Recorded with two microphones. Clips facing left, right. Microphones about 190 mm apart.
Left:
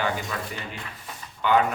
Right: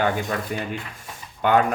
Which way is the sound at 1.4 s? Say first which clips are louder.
Right 3 dB; 50° right (ahead or behind).